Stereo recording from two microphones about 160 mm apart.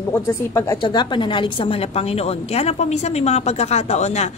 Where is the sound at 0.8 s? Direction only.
30° left (ahead or behind).